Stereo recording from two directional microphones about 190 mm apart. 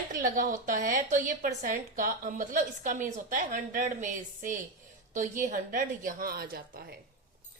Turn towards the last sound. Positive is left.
turn(degrees=-55)  # may be behind; listen again after turning